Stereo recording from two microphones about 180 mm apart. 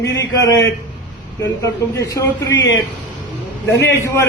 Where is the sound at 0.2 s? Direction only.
20° left (ahead or behind).